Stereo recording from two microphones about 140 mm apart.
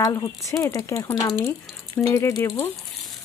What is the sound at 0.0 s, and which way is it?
Speech, 25° left (ahead or behind).